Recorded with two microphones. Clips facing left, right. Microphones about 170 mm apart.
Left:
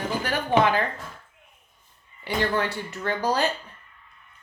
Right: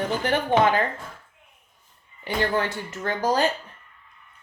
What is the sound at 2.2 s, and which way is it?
Speech, 45° right (ahead or behind).